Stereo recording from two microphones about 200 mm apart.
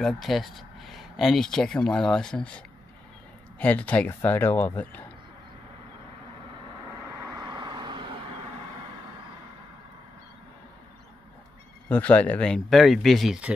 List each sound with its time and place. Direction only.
0.0 s speech: centre (ahead or behind)
7.2 s vehicle: 20° right (ahead or behind)
11.9 s speech: 5° left (ahead or behind)